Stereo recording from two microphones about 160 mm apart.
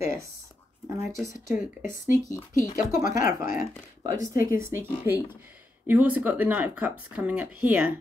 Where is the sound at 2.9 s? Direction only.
20° right (ahead or behind).